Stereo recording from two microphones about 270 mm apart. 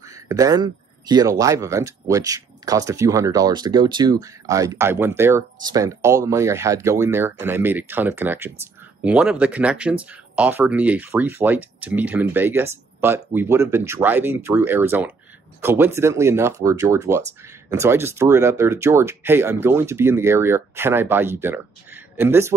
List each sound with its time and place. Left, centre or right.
0.0 s speech: centre